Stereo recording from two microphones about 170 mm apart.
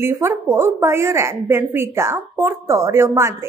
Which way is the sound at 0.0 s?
15° right (ahead or behind).